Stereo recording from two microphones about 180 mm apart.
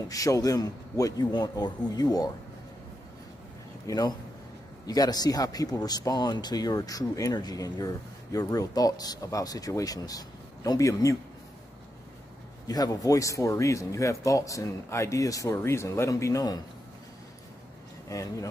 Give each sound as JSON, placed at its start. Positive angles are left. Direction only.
{"t": 0.1, "sound": "speech", "side_deg": 20}
{"t": 3.8, "sound": "a man's voice", "side_deg": 20}
{"t": 12.6, "sound": "speech", "side_deg": 20}
{"t": 18.0, "sound": "speech", "side_deg": 20}